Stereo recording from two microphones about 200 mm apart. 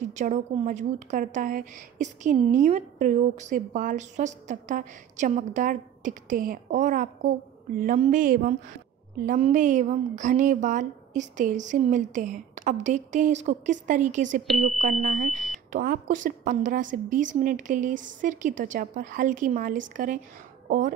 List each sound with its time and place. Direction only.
0.1 s a woman's voice: 35° right (ahead or behind)